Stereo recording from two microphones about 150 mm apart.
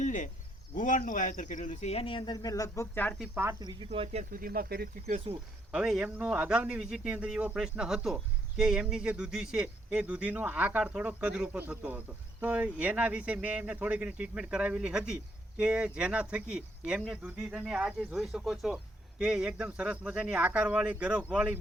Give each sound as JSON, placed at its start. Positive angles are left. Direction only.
{"t": 0.0, "sound": "a sound", "side_deg": 55}
{"t": 0.7, "sound": "speech", "side_deg": 60}
{"t": 3.2, "sound": "speech", "side_deg": -10}
{"t": 3.6, "sound": "cricket", "side_deg": -25}
{"t": 3.8, "sound": "speech", "side_deg": -40}
{"t": 4.2, "sound": "speech", "side_deg": -70}
{"t": 5.7, "sound": "speech", "side_deg": -5}